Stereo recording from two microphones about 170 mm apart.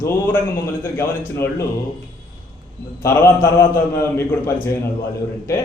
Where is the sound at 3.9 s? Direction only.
15° left (ahead or behind).